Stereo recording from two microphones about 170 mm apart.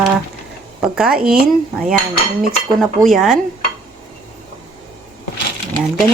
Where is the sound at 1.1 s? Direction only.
60° right (ahead or behind).